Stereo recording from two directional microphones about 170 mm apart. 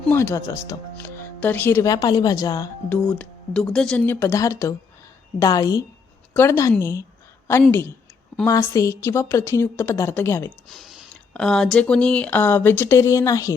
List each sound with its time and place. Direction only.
0.1 s speech: 15° left (ahead or behind)
3.2 s speech: 5° left (ahead or behind)
10.7 s speech: centre (ahead or behind); by 13.5 s 20° left (ahead or behind)